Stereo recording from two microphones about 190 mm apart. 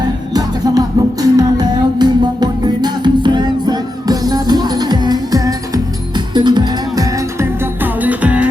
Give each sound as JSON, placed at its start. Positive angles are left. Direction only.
{"t": 0.0, "sound": "music", "side_deg": -20}